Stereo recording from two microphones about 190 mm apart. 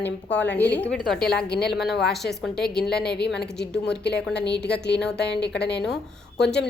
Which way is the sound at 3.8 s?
60° left (ahead or behind).